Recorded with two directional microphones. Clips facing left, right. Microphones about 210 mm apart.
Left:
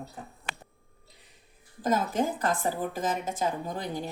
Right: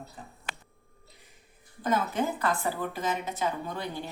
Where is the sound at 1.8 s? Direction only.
45° left (ahead or behind).